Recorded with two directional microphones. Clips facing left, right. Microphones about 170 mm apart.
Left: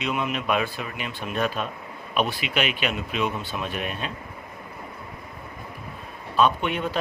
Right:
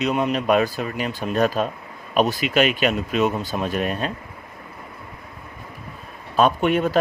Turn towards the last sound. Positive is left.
turn(degrees=-45)  # may be behind; listen again after turning